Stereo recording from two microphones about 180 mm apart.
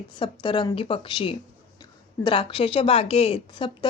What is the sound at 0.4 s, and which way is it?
A woman's voice, 25° left (ahead or behind).